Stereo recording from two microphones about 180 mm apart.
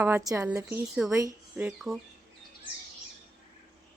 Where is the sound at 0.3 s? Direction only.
15° right (ahead or behind).